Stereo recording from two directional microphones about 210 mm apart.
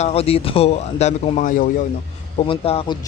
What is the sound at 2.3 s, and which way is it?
Speech, 25° left (ahead or behind).